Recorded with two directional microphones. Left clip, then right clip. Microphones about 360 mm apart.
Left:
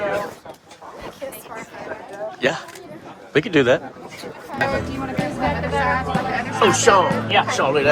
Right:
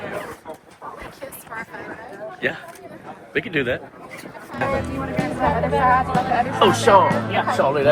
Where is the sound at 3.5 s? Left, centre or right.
Centre.